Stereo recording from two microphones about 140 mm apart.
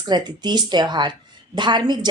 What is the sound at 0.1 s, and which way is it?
A woman's voice, 30° right (ahead or behind).